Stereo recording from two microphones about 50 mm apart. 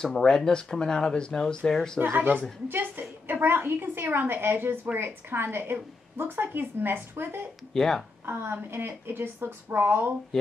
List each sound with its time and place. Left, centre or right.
0.0 s speech: centre
2.1 s a woman's voice: right
7.7 s speech: centre
8.3 s a woman's voice: right